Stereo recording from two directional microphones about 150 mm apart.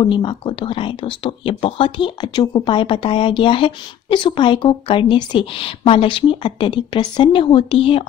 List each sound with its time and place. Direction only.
0.0 s speech: 30° left (ahead or behind)